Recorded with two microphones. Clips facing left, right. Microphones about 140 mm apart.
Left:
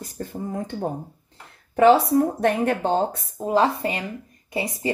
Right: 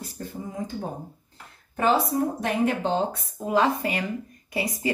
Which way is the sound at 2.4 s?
50° left (ahead or behind).